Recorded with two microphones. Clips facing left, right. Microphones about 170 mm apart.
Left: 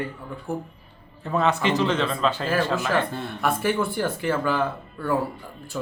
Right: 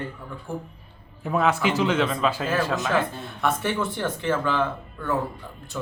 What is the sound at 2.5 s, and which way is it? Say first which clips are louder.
A man's voice: left 1 dB; 10° left (ahead or behind).